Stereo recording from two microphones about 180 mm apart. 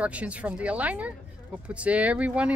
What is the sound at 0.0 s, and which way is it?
A child's voice, 5° right (ahead or behind).